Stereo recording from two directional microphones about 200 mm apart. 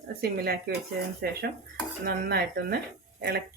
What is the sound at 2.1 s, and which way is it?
Speech, 50° right (ahead or behind).